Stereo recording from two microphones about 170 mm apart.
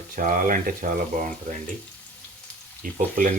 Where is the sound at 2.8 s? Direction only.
55° right (ahead or behind).